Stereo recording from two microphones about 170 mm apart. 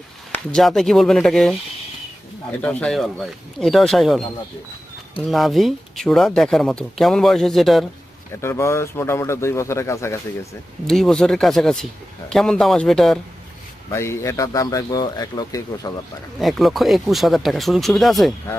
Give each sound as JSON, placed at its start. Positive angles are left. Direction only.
{"t": 0.3, "sound": "a sound", "side_deg": 10}
{"t": 0.6, "sound": "speech", "side_deg": 0}
{"t": 5.3, "sound": "speech", "side_deg": 0}
{"t": 8.4, "sound": "speech", "side_deg": 15}
{"t": 10.8, "sound": "speech", "side_deg": 0}
{"t": 13.9, "sound": "speech", "side_deg": 15}
{"t": 16.4, "sound": "speech", "side_deg": 0}